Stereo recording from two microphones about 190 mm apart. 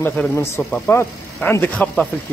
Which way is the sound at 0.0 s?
10° left (ahead or behind).